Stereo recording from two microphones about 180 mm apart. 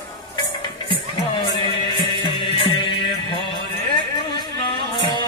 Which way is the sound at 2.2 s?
30° left (ahead or behind).